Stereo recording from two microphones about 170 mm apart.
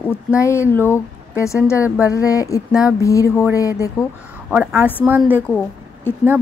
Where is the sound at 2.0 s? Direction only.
20° left (ahead or behind).